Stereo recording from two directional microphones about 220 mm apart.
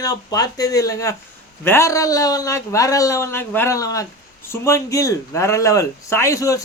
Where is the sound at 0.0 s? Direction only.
15° left (ahead or behind).